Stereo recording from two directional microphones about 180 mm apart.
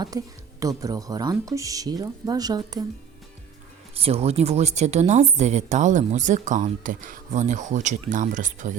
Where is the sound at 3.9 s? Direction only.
35° right (ahead or behind).